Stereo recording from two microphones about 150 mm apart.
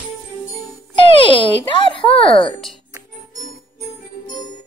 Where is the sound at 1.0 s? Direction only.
35° left (ahead or behind).